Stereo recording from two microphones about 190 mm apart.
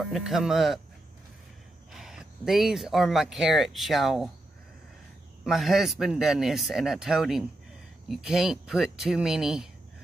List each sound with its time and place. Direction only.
0.0 s speech: centre (ahead or behind)
1.9 s speech: centre (ahead or behind)
5.4 s speech: centre (ahead or behind)